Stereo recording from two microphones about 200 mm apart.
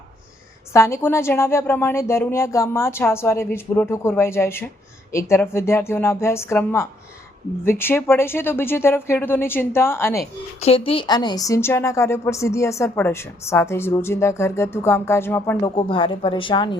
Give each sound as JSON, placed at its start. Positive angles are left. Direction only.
{"t": 0.7, "sound": "a woman's voice", "side_deg": 15}
{"t": 10.6, "sound": "a woman's voice", "side_deg": 30}
{"t": 15.7, "sound": "speech", "side_deg": 25}